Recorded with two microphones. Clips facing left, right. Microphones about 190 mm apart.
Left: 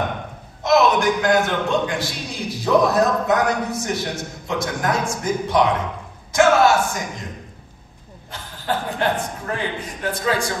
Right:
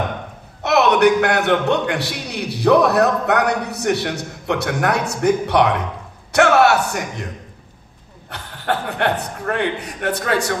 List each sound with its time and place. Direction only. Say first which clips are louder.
0.6 s a man's voice: right 2 dB; 70° right (ahead or behind)
8.3 s a man's voice: right 2 dB; 65° right (ahead or behind)